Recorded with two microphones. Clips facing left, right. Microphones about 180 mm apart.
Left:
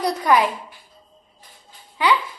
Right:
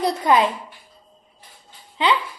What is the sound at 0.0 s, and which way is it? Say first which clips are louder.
Speech: even; 25° right (ahead or behind).